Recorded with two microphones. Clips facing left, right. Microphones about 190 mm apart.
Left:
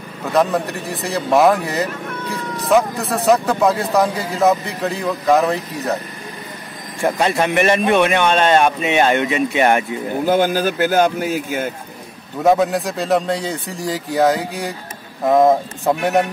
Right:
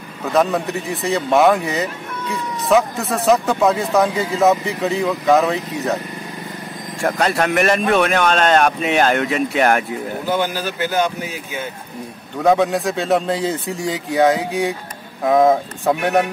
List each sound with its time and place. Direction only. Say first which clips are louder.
0.2 s a man's voice: even; centre (ahead or behind)
7.2 s a man's voice: even; centre (ahead or behind)
10.2 s a man's voice: left 6 dB; 50° left (ahead or behind)
12.4 s a man's voice: even; centre (ahead or behind)